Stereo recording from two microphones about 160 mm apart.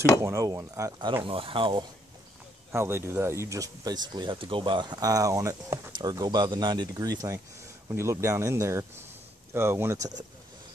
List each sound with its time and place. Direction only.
0.2 s speech: 20° right (ahead or behind)
1.2 s speech: 35° right (ahead or behind)
2.7 s speech: 15° right (ahead or behind)